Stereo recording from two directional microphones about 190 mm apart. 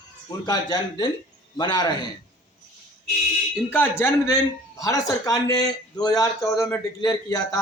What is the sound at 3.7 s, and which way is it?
A man's voice, 10° left (ahead or behind).